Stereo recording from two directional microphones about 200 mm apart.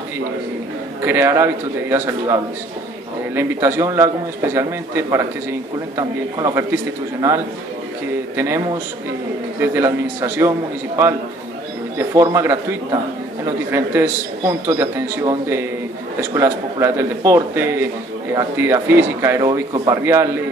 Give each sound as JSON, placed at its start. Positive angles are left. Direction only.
{"t": 1.0, "sound": "a man's voice", "side_deg": -15}
{"t": 12.0, "sound": "a man's voice", "side_deg": -15}